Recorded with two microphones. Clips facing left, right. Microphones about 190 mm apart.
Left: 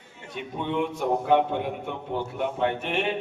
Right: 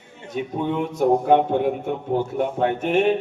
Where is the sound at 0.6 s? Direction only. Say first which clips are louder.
Right 5 dB; 45° right (ahead or behind).